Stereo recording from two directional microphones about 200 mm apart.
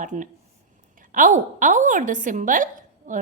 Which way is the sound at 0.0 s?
40° right (ahead or behind).